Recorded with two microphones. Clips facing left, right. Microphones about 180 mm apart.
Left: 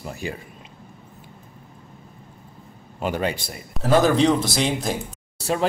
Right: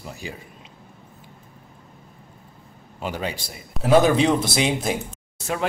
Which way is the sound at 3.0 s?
50° left (ahead or behind).